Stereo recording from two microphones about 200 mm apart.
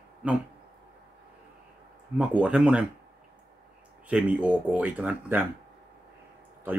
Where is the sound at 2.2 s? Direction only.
5° right (ahead or behind).